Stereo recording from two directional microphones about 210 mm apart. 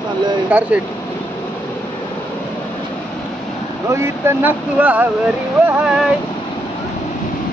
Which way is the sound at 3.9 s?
10° right (ahead or behind).